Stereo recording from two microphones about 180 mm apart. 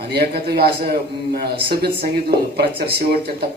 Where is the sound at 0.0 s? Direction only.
65° right (ahead or behind).